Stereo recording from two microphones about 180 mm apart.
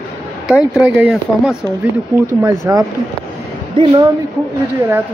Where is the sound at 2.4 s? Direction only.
20° right (ahead or behind).